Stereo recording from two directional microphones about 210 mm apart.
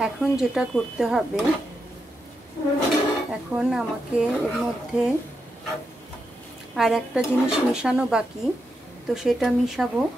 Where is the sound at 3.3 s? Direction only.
5° right (ahead or behind).